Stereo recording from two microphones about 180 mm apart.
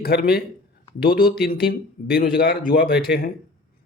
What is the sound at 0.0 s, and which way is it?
Speech, 60° left (ahead or behind).